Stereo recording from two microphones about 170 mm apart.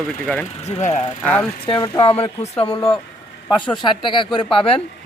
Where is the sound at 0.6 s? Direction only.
40° left (ahead or behind).